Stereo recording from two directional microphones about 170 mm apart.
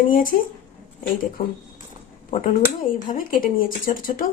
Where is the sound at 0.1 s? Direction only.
60° left (ahead or behind).